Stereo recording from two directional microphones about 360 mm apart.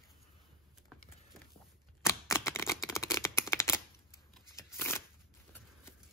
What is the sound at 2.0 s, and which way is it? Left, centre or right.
Shuffling cards, centre.